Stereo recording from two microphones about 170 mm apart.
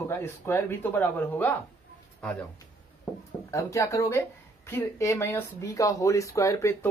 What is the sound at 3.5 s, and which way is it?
Speech, 20° left (ahead or behind).